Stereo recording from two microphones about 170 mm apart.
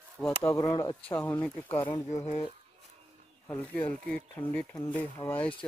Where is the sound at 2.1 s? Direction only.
35° left (ahead or behind).